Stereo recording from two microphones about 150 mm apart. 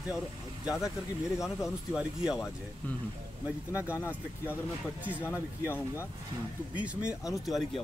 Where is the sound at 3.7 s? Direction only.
10° right (ahead or behind).